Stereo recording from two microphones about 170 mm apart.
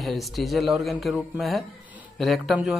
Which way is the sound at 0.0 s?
Centre (ahead or behind).